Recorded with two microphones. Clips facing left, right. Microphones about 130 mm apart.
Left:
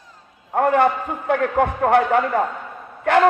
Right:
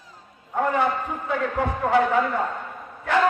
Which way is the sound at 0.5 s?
60° left (ahead or behind).